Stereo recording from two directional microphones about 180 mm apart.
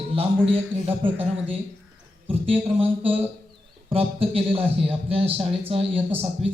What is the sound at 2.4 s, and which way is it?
A man's voice, 30° right (ahead or behind).